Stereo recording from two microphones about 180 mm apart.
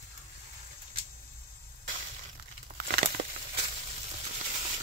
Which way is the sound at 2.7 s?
45° right (ahead or behind).